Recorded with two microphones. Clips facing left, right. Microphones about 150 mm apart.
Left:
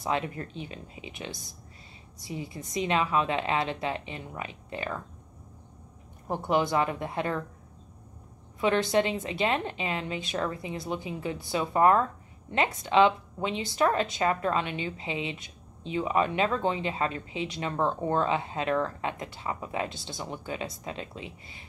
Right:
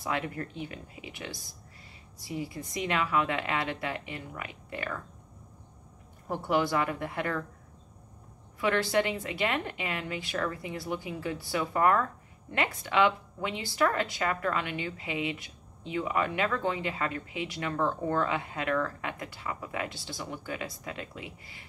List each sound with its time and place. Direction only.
0.0 s a woman's voice: 20° left (ahead or behind)
6.2 s a woman's voice: 20° left (ahead or behind)
8.5 s a woman's voice: 20° left (ahead or behind)